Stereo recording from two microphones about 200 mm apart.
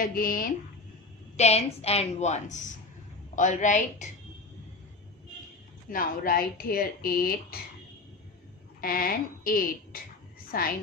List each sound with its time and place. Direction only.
0.0 s speech: 45° left (ahead or behind)
1.3 s a woman's voice: 35° left (ahead or behind)
5.9 s speech: 45° left (ahead or behind)
8.8 s speech: 45° left (ahead or behind)